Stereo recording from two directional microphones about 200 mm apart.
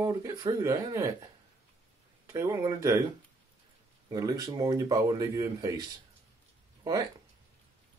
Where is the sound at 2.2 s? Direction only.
15° right (ahead or behind).